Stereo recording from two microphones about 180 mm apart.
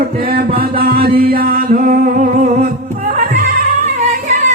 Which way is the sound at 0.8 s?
60° right (ahead or behind).